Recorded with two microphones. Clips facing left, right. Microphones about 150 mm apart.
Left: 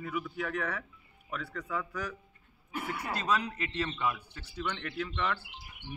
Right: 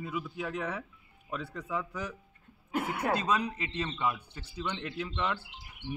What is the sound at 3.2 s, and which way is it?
A man's voice, 20° right (ahead or behind).